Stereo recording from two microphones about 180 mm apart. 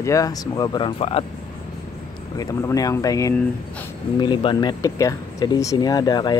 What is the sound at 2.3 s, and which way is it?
Speech, 20° left (ahead or behind).